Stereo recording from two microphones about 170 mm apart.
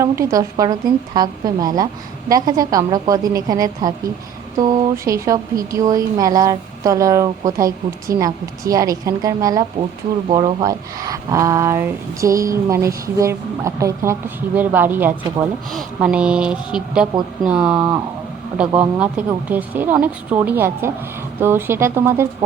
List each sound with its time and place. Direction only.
0.0 s speech: 20° right (ahead or behind)